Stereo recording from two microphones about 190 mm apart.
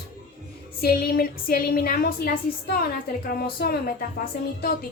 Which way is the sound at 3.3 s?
50° left (ahead or behind).